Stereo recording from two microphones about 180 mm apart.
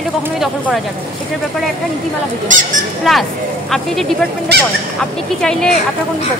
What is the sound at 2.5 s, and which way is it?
Speech, 45° right (ahead or behind).